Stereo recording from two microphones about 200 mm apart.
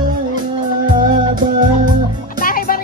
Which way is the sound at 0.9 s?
40° right (ahead or behind).